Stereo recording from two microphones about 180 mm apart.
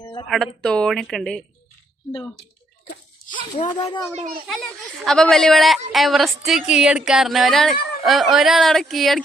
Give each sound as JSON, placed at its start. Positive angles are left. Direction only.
{"t": 0.0, "sound": "a sound", "side_deg": 25}
{"t": 0.3, "sound": "speech", "side_deg": 0}
{"t": 3.8, "sound": "a child's voice", "side_deg": 25}
{"t": 5.0, "sound": "speech", "side_deg": 5}